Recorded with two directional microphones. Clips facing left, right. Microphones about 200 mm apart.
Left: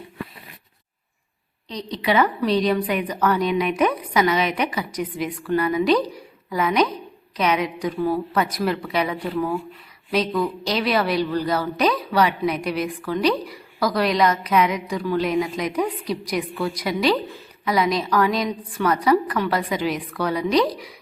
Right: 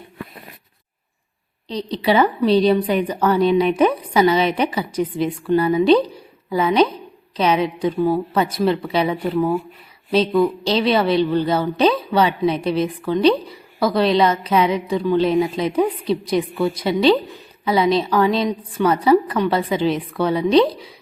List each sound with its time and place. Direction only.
1.6 s a woman's voice: 30° right (ahead or behind)